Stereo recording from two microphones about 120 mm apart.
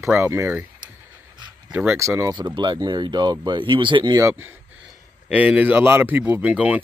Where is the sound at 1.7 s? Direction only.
20° right (ahead or behind).